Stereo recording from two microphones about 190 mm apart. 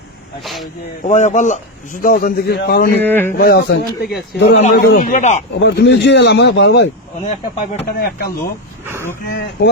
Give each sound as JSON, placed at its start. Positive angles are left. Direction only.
{"t": 0.4, "sound": "speech", "side_deg": 0}
{"t": 1.0, "sound": "a man's voice", "side_deg": 40}
{"t": 3.0, "sound": "speech", "side_deg": 10}
{"t": 3.3, "sound": "speech", "side_deg": 55}
{"t": 4.9, "sound": "a man's voice", "side_deg": 40}
{"t": 5.5, "sound": "speech", "side_deg": 70}
{"t": 7.6, "sound": "a man's voice", "side_deg": 40}
{"t": 7.9, "sound": "a man's voice", "side_deg": 55}